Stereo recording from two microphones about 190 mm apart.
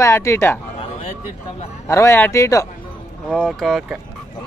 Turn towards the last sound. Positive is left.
turn(degrees=0)  # may be behind; listen again after turning